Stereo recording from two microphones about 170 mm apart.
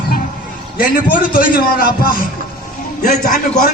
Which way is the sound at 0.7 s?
60° left (ahead or behind).